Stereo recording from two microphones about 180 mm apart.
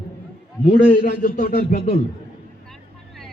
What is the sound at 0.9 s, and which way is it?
A man's voice, 55° left (ahead or behind).